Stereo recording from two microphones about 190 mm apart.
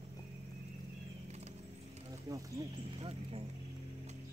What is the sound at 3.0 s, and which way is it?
Speech, 30° right (ahead or behind).